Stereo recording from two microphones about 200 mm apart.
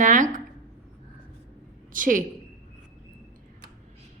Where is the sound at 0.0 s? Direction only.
40° right (ahead or behind).